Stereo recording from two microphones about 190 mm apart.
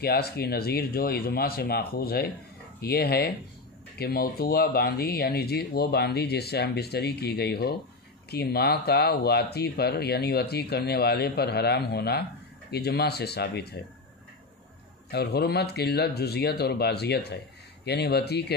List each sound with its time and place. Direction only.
0.0 s speech: 55° left (ahead or behind)
15.0 s speech: 60° left (ahead or behind)